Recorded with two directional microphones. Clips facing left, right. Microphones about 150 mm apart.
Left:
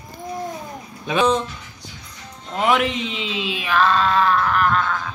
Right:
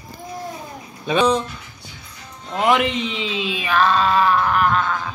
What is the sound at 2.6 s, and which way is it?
Speech, centre (ahead or behind).